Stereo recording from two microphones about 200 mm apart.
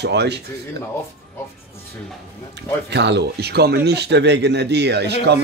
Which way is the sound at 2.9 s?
55° right (ahead or behind).